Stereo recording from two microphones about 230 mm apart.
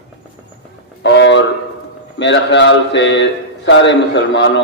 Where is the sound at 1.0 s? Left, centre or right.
Left.